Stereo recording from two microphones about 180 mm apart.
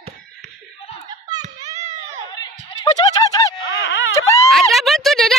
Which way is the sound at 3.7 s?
90° left.